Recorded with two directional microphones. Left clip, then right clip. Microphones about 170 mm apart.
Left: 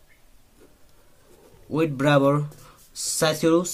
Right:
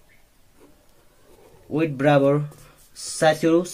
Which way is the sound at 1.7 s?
35° left (ahead or behind).